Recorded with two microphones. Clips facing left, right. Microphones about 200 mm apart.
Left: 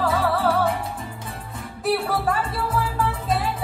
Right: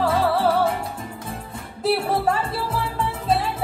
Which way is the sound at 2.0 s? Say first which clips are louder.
Right 2 dB; 25° right (ahead or behind).